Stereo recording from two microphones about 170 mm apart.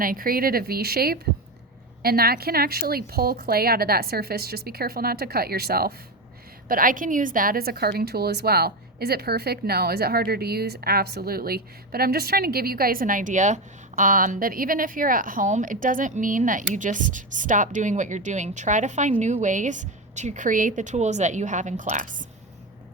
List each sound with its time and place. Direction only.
0.0 s a woman's voice: 55° right (ahead or behind)
6.7 s a woman's voice: 55° right (ahead or behind)